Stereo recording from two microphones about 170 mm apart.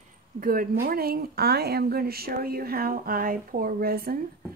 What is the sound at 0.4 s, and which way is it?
Speech, 60° right (ahead or behind).